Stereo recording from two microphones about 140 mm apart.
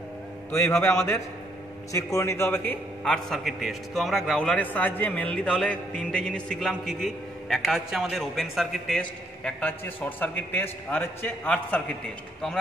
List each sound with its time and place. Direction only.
0.5 s a man's voice: 15° left (ahead or behind)
0.7 s a man's voice: 5° left (ahead or behind)
1.9 s a man's voice: 20° left (ahead or behind)